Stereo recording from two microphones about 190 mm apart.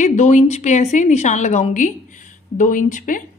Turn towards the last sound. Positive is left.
turn(degrees=45)  # may be behind; listen again after turning